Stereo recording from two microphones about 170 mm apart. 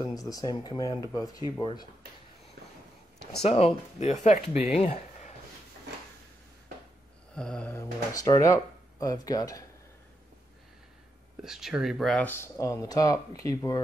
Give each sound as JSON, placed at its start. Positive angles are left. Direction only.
{"t": 0.0, "sound": "speech", "side_deg": 20}
{"t": 3.4, "sound": "speech", "side_deg": 40}
{"t": 7.3, "sound": "mantra", "side_deg": 5}
{"t": 8.1, "sound": "speech", "side_deg": 20}
{"t": 11.4, "sound": "speech", "side_deg": -5}